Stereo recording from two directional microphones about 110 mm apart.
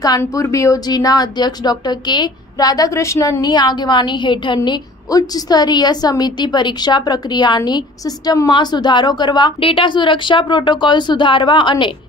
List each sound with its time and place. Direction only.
0.2 s a woman's voice: 30° left (ahead or behind)
9.6 s speech: 55° left (ahead or behind)